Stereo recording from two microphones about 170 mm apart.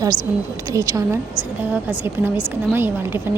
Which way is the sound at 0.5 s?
20° right (ahead or behind).